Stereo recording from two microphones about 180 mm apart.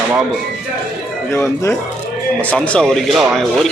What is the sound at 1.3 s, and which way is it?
A man's voice, 15° left (ahead or behind).